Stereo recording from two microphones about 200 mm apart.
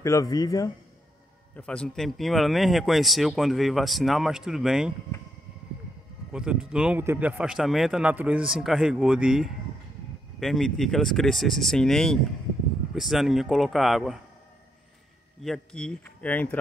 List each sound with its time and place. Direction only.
0.0 s speech: 15° left (ahead or behind)
1.6 s speech: 5° left (ahead or behind)
6.3 s speech: 5° right (ahead or behind)
15.4 s speech: 5° left (ahead or behind)